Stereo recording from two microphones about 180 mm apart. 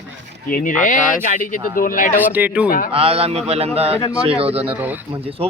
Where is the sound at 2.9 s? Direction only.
30° right (ahead or behind).